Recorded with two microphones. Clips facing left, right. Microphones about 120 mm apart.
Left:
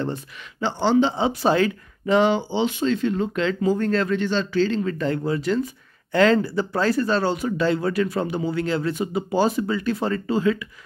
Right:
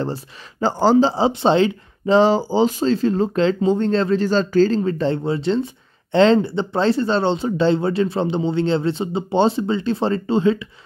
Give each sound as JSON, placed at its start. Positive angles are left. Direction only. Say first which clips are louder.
{"t": 0.0, "sound": "speech", "louder": "right 2 dB", "side_deg": -35}